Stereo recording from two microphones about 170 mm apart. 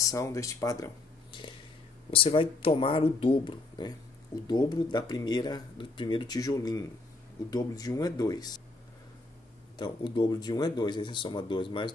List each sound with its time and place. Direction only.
0.0 s speech: 20° left (ahead or behind)
9.8 s speech: 25° left (ahead or behind)